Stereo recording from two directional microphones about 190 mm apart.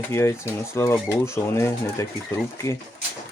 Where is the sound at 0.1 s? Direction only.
15° left (ahead or behind).